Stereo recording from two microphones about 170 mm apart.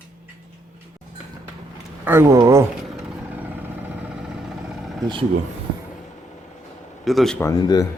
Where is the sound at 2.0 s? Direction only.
15° right (ahead or behind).